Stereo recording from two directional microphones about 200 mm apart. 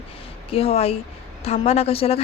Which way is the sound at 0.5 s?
30° left (ahead or behind).